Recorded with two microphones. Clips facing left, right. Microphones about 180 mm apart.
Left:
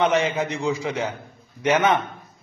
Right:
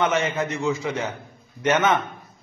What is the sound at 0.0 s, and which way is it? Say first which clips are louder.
Speech: left 2 dB; 15° left (ahead or behind).